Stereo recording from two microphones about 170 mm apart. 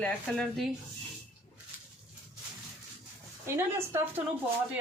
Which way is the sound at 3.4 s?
15° right (ahead or behind).